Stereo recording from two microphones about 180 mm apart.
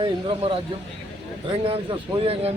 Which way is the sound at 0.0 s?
30° right (ahead or behind).